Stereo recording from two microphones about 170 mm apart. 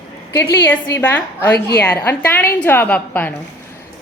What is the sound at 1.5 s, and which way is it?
Speech, 70° left (ahead or behind).